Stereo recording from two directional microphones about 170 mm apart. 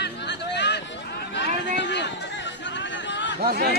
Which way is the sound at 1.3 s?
90° left.